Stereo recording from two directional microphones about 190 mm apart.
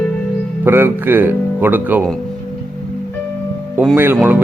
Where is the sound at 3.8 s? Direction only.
10° right (ahead or behind).